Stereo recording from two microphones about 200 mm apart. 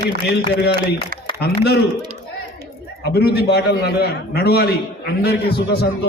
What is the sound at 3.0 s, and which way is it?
A man's voice, 55° left (ahead or behind).